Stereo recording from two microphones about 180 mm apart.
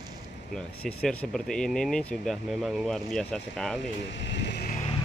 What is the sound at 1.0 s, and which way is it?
Speech, 5° left (ahead or behind).